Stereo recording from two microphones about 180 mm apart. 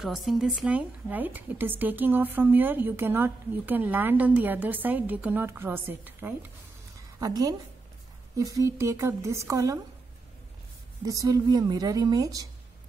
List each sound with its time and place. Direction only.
0.0 s a woman's voice: centre (ahead or behind); by 9.8 s 20° right (ahead or behind)
11.1 s a woman's voice: 20° right (ahead or behind)